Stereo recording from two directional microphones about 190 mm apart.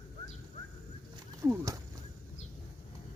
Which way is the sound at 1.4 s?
15° right (ahead or behind).